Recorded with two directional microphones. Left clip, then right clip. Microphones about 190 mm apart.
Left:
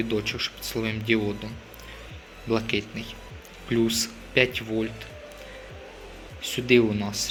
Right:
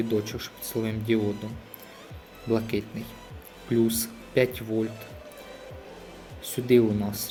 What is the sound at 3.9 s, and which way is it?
Speech, 10° right (ahead or behind).